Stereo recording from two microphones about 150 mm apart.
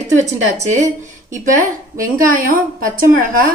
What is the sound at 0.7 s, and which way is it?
Speech, 55° right (ahead or behind).